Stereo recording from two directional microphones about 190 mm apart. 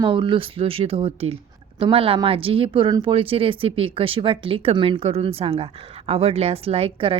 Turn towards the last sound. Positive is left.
turn(degrees=-30)  # may be behind; listen again after turning